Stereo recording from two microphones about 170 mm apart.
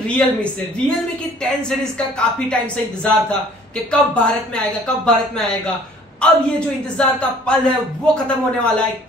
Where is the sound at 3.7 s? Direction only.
5° left (ahead or behind).